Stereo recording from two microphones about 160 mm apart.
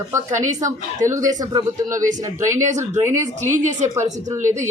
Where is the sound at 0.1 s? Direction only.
20° right (ahead or behind).